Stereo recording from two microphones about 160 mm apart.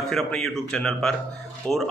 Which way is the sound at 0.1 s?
5° left (ahead or behind).